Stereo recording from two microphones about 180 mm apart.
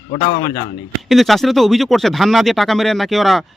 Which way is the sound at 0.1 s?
50° left (ahead or behind).